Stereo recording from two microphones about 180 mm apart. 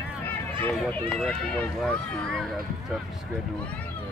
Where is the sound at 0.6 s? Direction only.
10° left (ahead or behind).